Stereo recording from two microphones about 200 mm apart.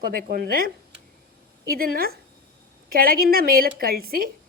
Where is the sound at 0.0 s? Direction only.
45° right (ahead or behind).